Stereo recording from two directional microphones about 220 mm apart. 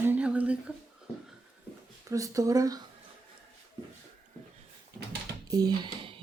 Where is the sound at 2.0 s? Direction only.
15° right (ahead or behind).